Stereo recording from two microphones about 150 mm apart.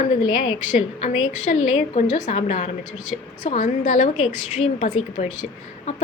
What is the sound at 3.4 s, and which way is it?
A woman's voice, 60° left (ahead or behind).